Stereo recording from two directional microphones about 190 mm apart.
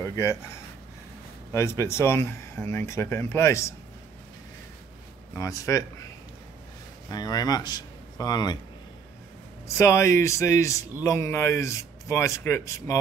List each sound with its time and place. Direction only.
0.0 s speech: 15° left (ahead or behind)
1.5 s a man's voice: 15° left (ahead or behind)
5.3 s a man's voice: 15° left (ahead or behind)
7.1 s speech: 20° left (ahead or behind)
9.8 s a man's voice: 15° left (ahead or behind)